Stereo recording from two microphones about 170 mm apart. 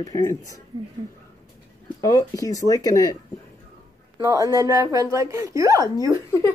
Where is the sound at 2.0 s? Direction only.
20° left (ahead or behind).